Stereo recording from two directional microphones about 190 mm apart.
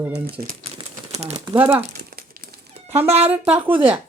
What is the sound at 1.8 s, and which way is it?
Crumpling, 50° right (ahead or behind).